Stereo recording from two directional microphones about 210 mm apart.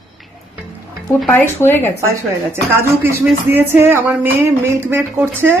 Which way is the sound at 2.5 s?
10° right (ahead or behind).